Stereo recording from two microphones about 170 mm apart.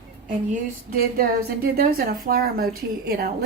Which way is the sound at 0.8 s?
65° right (ahead or behind).